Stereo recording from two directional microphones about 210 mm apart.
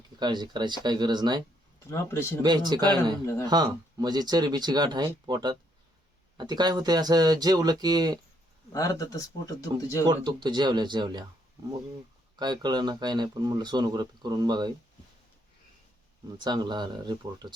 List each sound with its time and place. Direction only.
0.2 s speech: 20° right (ahead or behind)
1.9 s speech: 10° left (ahead or behind)
2.4 s speech: 20° right (ahead or behind)
8.7 s speech: 15° left (ahead or behind)
10.1 s speech: 20° right (ahead or behind)
12.4 s speech: 20° right (ahead or behind)
16.4 s speech: 20° right (ahead or behind)